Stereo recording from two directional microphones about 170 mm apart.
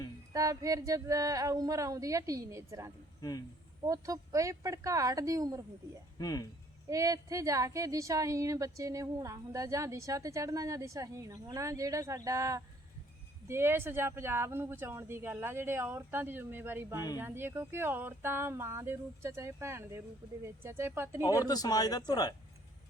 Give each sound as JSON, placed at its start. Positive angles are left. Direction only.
{"t": 0.3, "sound": "a woman's voice", "side_deg": -20}
{"t": 3.2, "sound": "speech", "side_deg": 20}
{"t": 3.8, "sound": "a woman's voice", "side_deg": -20}
{"t": 6.1, "sound": "speech", "side_deg": 20}
{"t": 6.8, "sound": "a woman's voice", "side_deg": -20}
{"t": 21.2, "sound": "speech", "side_deg": 20}